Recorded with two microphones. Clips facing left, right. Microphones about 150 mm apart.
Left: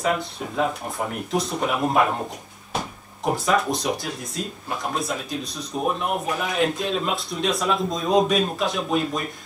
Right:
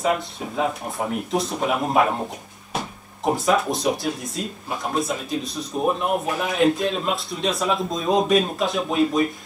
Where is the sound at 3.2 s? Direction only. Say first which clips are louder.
Right 2 dB; centre (ahead or behind).